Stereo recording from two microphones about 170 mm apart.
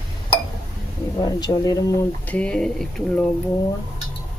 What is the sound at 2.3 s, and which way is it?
Speech, 5° left (ahead or behind).